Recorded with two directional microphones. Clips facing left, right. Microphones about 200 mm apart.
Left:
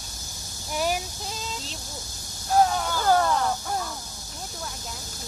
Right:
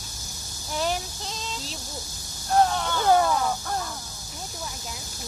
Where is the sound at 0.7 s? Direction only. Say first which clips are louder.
Left 1 dB; 10° left (ahead or behind).